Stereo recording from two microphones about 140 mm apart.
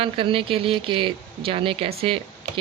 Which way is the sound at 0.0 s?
40° right (ahead or behind).